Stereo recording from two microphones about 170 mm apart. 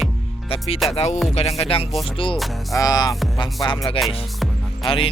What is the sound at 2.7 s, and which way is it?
Music, 20° left (ahead or behind).